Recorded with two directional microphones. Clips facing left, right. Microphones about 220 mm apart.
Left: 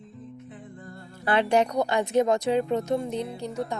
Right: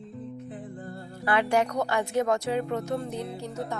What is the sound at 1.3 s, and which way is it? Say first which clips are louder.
A woman's voice: left 2 dB; 20° left (ahead or behind).